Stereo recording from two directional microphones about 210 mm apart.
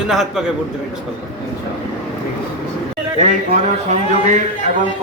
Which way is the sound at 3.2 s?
35° right (ahead or behind).